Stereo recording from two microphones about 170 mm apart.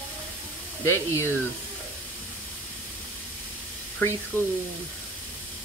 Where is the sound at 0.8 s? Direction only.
15° left (ahead or behind).